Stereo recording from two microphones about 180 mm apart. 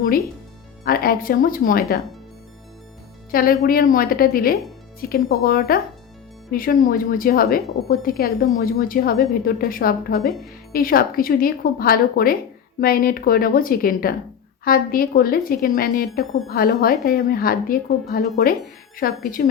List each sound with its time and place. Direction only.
0.9 s speech: 55° left (ahead or behind)
3.3 s a woman's voice: 55° left (ahead or behind)